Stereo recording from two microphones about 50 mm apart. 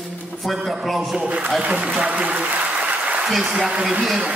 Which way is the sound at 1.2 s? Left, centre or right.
Right.